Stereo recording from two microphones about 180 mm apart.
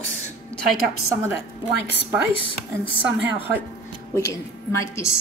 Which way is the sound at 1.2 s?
10° right (ahead or behind).